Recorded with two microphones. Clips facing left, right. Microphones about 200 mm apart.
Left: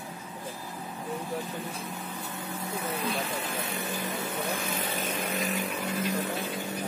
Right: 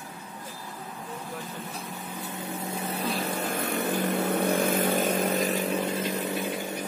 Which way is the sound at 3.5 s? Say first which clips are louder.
Right 6 dB; 55° right (ahead or behind).